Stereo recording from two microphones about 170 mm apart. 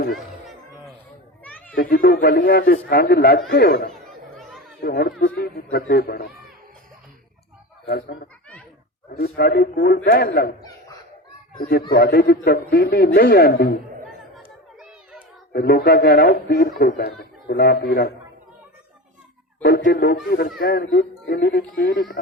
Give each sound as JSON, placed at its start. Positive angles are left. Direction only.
{"t": 1.5, "sound": "children playing", "side_deg": 10}
{"t": 1.7, "sound": "a man's voice", "side_deg": 60}
{"t": 7.9, "sound": "a man's voice", "side_deg": 65}
{"t": 11.7, "sound": "a man's voice", "side_deg": 65}
{"t": 15.5, "sound": "a man's voice", "side_deg": 65}
{"t": 19.6, "sound": "a man's voice", "side_deg": 65}